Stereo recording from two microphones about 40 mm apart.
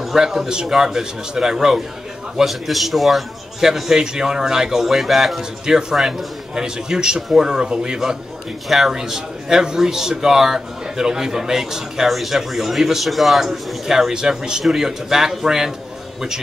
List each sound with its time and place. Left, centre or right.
0.0 s a man's voice: centre
2.4 s a man's voice: centre
6.5 s a man's voice: centre
8.6 s a man's voice: centre